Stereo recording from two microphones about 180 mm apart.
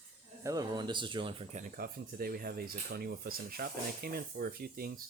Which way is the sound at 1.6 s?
55° right (ahead or behind).